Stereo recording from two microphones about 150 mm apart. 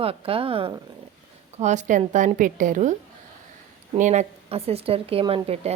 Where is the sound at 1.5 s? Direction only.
50° right (ahead or behind).